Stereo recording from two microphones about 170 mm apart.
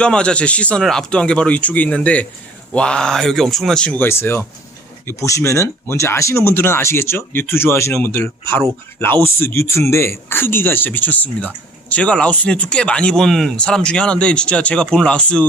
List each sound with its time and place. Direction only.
0.0 s speech: 5° left (ahead or behind)